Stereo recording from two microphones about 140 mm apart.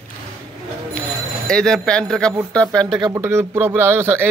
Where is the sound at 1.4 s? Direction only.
5° left (ahead or behind).